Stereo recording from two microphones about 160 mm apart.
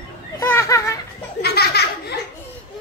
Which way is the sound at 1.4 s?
80° left.